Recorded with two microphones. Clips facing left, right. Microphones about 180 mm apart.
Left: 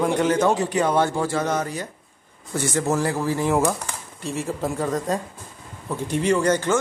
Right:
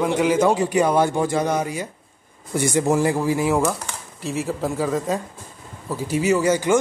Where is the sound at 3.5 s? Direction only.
5° left (ahead or behind).